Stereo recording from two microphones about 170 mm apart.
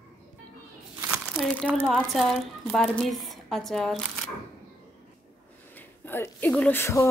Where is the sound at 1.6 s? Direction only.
10° right (ahead or behind).